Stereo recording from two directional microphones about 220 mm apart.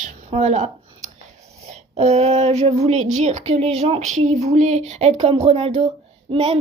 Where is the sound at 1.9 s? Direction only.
30° right (ahead or behind).